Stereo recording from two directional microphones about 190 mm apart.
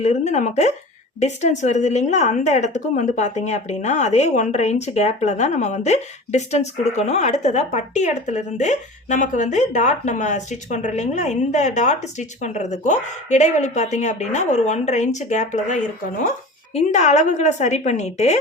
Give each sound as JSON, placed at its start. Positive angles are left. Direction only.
{"t": 0.0, "sound": "a woman's voice", "side_deg": 35}